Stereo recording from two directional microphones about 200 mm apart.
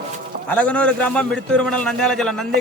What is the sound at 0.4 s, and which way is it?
A man's voice, 5° left (ahead or behind).